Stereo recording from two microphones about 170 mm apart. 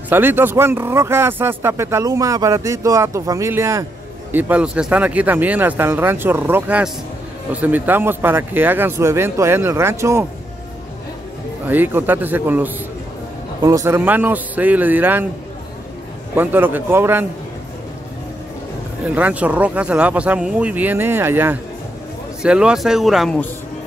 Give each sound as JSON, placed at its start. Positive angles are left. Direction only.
{"t": 0.1, "sound": "speech", "side_deg": -10}
{"t": 11.6, "sound": "speech", "side_deg": -10}
{"t": 16.3, "sound": "speech", "side_deg": -10}
{"t": 19.1, "sound": "speech", "side_deg": -10}